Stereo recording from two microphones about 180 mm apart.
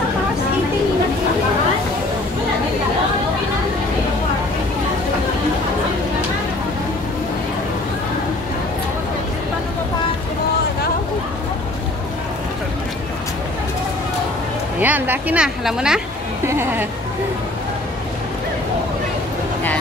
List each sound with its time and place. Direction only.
14.8 s speech: 10° right (ahead or behind)